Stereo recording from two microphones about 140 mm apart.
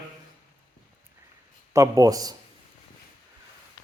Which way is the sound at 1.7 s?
25° right (ahead or behind).